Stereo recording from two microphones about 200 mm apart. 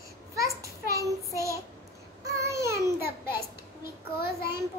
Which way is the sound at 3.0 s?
10° right (ahead or behind).